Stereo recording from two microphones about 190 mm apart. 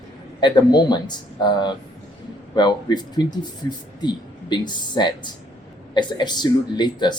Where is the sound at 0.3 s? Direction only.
25° left (ahead or behind).